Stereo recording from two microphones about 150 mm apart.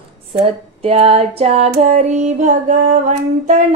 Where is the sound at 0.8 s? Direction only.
40° right (ahead or behind).